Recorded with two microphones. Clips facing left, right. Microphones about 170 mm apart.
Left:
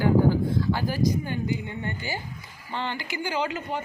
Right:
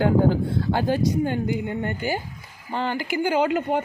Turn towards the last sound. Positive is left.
turn(degrees=-60)  # may be behind; listen again after turning